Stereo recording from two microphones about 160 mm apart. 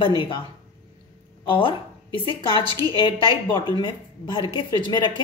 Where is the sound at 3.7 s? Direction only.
30° left (ahead or behind).